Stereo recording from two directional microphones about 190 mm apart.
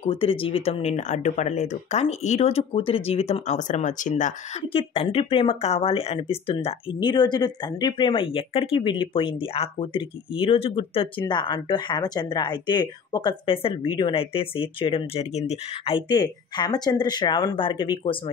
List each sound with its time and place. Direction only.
0.0 s speech: 30° left (ahead or behind)